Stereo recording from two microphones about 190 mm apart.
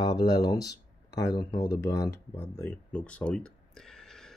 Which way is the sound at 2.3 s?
10° left (ahead or behind).